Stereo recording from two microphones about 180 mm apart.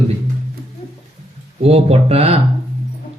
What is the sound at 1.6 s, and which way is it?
Speech, 35° right (ahead or behind).